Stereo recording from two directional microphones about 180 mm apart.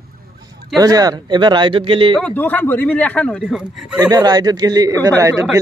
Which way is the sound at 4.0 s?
20° right (ahead or behind).